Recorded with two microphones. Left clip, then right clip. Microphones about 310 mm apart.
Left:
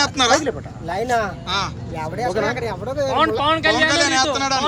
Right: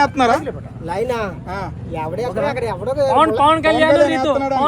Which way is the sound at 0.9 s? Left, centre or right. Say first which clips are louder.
Even; centre.